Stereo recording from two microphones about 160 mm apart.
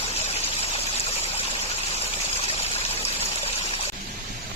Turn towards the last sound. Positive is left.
turn(degrees=40)  # may be behind; listen again after turning